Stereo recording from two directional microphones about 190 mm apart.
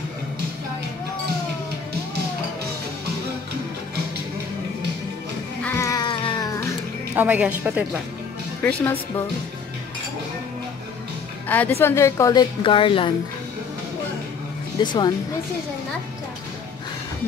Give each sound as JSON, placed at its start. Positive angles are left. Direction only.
{"t": 5.6, "sound": "music", "side_deg": 15}
{"t": 7.2, "sound": "a woman's voice", "side_deg": -10}
{"t": 11.4, "sound": "a woman's voice", "side_deg": 10}
{"t": 14.8, "sound": "speech", "side_deg": 25}